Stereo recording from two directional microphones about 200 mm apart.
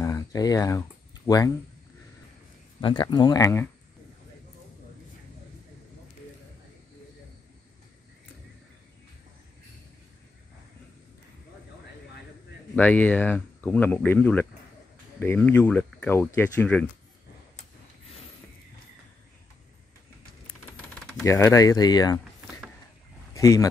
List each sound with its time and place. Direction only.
0.0 s a sound: 15° left (ahead or behind)
2.8 s speech: 25° left (ahead or behind)
12.7 s speech: 10° left (ahead or behind)
21.2 s speech: 15° left (ahead or behind)
23.3 s speech: 15° left (ahead or behind)